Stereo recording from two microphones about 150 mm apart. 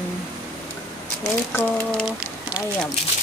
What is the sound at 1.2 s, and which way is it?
Speech, 15° left (ahead or behind).